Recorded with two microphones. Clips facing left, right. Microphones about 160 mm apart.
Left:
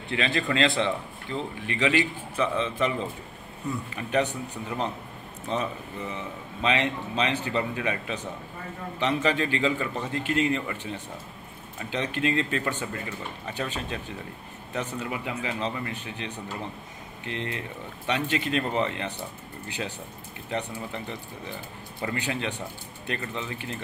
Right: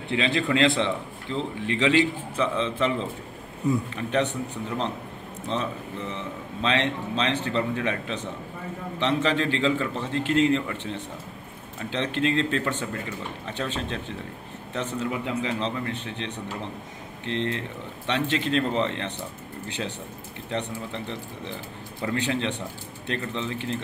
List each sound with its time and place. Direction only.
0.1 s a man's voice: 20° right (ahead or behind)
0.7 s a man's voice: 10° left (ahead or behind)
5.5 s speech: 10° left (ahead or behind)
17.3 s speech: 10° left (ahead or behind)
20.4 s speech: 10° left (ahead or behind)